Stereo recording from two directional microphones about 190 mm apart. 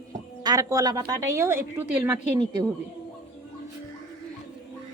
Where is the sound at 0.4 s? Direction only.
20° right (ahead or behind).